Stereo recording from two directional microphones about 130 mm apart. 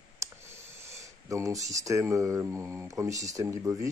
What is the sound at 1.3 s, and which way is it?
Speech, 25° right (ahead or behind).